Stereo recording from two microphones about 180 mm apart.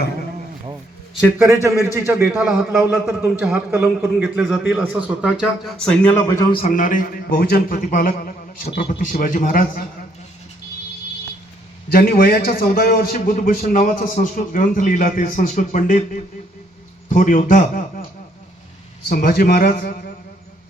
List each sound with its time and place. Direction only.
1.4 s a man's voice: 15° right (ahead or behind)
2.4 s a man's voice: centre (ahead or behind)
3.1 s a man's voice: 10° right (ahead or behind); by 6.6 s 20° left (ahead or behind)
6.7 s a man's voice: 50° left (ahead or behind)
11.9 s a man's voice: 55° left (ahead or behind)
19.0 s a man's voice: 55° left (ahead or behind)